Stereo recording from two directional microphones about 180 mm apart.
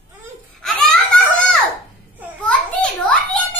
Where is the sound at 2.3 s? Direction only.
5° left (ahead or behind).